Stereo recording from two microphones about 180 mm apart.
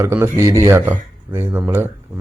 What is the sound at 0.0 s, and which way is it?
Speech, 15° right (ahead or behind).